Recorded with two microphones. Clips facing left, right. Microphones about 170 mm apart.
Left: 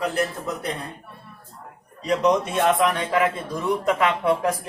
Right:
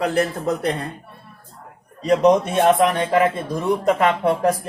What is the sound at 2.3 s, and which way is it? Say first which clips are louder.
Speech: right 4 dB; 35° right (ahead or behind).